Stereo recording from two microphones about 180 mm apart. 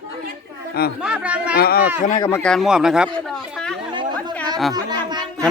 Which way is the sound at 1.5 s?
60° left (ahead or behind).